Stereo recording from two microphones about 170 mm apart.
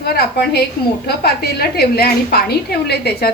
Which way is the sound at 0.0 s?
70° left (ahead or behind).